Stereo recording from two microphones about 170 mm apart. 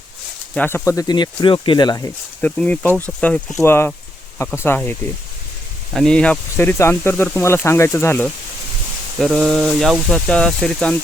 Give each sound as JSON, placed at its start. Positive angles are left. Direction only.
{"t": 0.5, "sound": "speech", "side_deg": 10}
{"t": 2.4, "sound": "speech", "side_deg": 10}
{"t": 9.1, "sound": "speech", "side_deg": 0}